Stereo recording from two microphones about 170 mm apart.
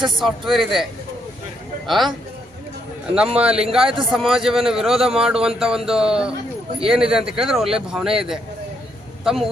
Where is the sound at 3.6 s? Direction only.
5° right (ahead or behind).